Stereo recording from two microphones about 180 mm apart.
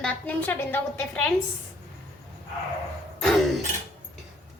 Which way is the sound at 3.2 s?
Centre (ahead or behind).